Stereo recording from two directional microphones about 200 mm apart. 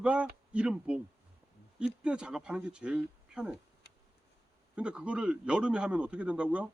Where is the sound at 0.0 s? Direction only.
5° right (ahead or behind).